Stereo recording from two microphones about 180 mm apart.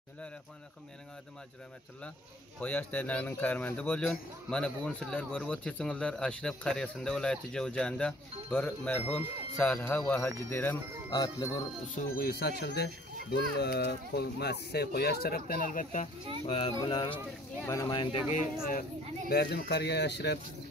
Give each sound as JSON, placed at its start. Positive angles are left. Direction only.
{"t": 2.6, "sound": "speech", "side_deg": 10}
{"t": 11.1, "sound": "bell", "side_deg": 20}
{"t": 11.9, "sound": "speech", "side_deg": 55}
{"t": 16.4, "sound": "speech", "side_deg": 35}
{"t": 16.7, "sound": "bell", "side_deg": 20}
{"t": 17.6, "sound": "speech", "side_deg": 15}
{"t": 17.8, "sound": "bell", "side_deg": 30}
{"t": 18.3, "sound": "speech", "side_deg": 50}